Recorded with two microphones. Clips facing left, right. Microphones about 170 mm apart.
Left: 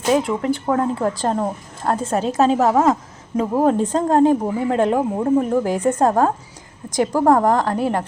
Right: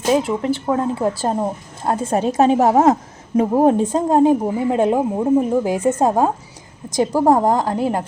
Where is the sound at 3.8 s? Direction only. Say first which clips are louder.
Right 1 dB; 10° right (ahead or behind).